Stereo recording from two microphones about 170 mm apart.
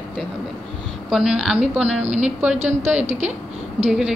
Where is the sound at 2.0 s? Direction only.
40° right (ahead or behind).